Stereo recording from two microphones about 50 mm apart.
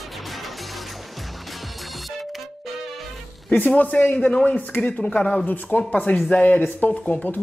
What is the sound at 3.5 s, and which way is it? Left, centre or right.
Speech, left.